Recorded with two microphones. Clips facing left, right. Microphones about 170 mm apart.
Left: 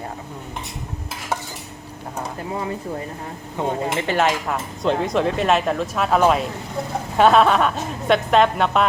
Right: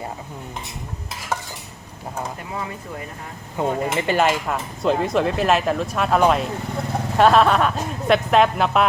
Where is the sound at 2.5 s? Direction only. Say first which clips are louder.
Left 7 dB; 30° left (ahead or behind).